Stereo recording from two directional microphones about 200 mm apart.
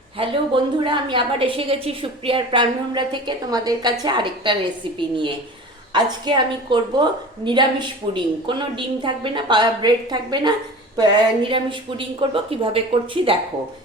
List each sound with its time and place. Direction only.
0.2 s a woman's voice: 25° right (ahead or behind)